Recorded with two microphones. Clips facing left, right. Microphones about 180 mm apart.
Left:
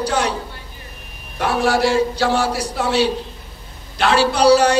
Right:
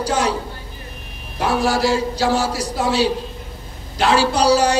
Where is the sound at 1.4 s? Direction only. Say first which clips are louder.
Left 1 dB; 35° right (ahead or behind).